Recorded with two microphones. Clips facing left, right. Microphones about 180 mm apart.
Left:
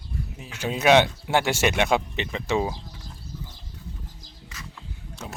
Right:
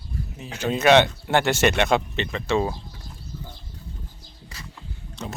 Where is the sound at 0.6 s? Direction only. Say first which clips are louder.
Right 2 dB; 10° left (ahead or behind).